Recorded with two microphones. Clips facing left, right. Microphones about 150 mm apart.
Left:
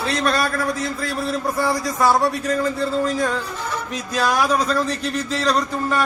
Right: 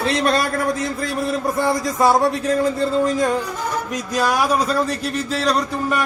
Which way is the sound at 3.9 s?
10° right (ahead or behind).